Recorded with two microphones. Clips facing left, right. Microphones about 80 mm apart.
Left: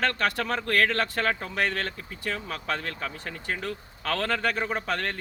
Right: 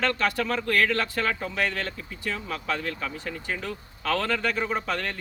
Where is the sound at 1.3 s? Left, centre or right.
Left.